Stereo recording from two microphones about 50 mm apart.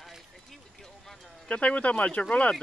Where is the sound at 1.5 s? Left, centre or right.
Left.